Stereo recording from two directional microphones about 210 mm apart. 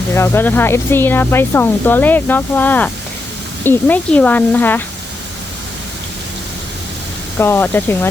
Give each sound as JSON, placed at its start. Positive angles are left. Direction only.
{"t": 0.1, "sound": "speech", "side_deg": 10}
{"t": 7.3, "sound": "speech", "side_deg": 10}